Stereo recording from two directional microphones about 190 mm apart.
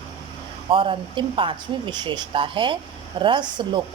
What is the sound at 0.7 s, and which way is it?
Speech, 25° right (ahead or behind).